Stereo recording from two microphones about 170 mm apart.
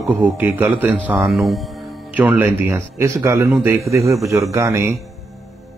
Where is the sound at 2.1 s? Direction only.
10° right (ahead or behind).